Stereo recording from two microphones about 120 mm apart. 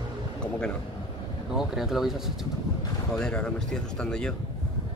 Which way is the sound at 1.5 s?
5° right (ahead or behind).